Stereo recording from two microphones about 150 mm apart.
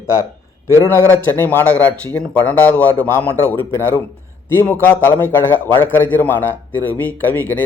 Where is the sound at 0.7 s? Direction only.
20° left (ahead or behind).